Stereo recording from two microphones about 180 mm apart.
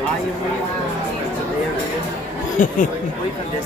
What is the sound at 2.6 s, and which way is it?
Speech, 45° left (ahead or behind).